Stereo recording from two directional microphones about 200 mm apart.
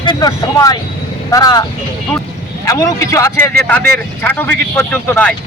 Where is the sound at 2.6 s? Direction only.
15° left (ahead or behind).